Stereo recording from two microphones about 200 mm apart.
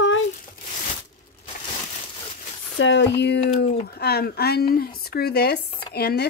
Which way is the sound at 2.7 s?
65° left (ahead or behind).